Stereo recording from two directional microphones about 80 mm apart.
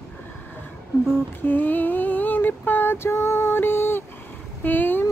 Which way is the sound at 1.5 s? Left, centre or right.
Left.